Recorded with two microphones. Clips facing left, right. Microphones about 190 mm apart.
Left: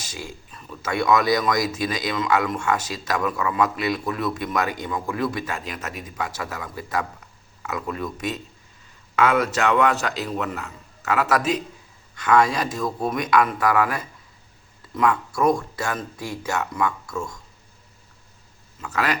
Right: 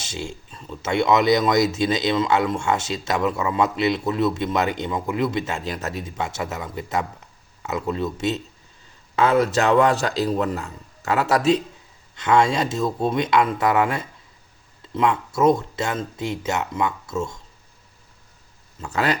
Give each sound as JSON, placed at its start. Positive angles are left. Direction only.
{"t": 0.0, "sound": "a man's voice", "side_deg": -25}
{"t": 18.8, "sound": "speech", "side_deg": -30}